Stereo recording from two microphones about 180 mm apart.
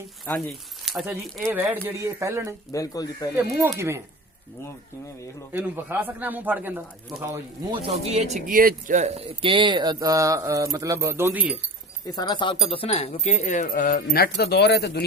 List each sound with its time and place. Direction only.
0.3 s speech: 5° left (ahead or behind)
1.5 s speech: 10° right (ahead or behind)
2.7 s speech: 20° left (ahead or behind)
3.8 s speech: 15° right (ahead or behind)
5.5 s speech: 10° right (ahead or behind)
7.7 s speech: 35° right (ahead or behind); by 11.5 s 10° right (ahead or behind)
12.0 s speech: 20° left (ahead or behind); by 15.0 s 65° left (ahead or behind)